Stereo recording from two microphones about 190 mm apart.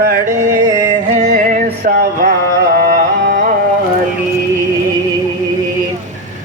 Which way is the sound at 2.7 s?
55° right (ahead or behind).